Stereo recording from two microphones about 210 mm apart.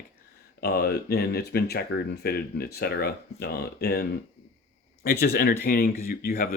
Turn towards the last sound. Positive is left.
turn(degrees=45)  # may be behind; listen again after turning